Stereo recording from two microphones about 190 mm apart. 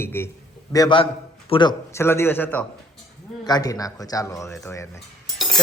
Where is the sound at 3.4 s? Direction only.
20° left (ahead or behind).